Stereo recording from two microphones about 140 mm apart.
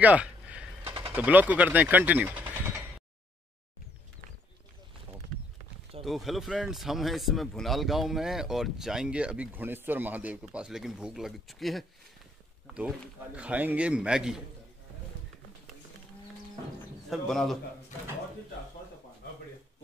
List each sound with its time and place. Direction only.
0.0 s a sound: 10° right (ahead or behind)
1.0 s speech: 15° right (ahead or behind)
6.0 s speech: centre (ahead or behind)
13.3 s a man's voice: 10° right (ahead or behind)
17.1 s speech: centre (ahead or behind)